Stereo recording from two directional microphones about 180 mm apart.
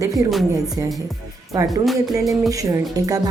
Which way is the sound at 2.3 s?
20° right (ahead or behind).